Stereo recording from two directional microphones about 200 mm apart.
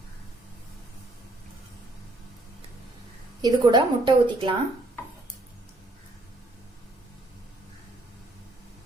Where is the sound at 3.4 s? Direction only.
20° right (ahead or behind).